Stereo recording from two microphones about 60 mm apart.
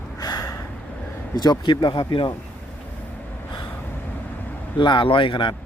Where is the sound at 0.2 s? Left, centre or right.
Left.